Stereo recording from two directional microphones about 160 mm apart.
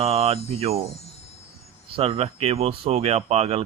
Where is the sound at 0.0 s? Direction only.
35° right (ahead or behind).